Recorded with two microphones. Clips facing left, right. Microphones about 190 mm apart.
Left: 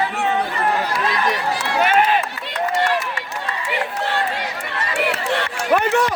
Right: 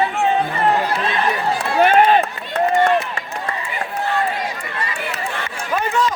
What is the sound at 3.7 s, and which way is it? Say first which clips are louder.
Run: even; 80° left.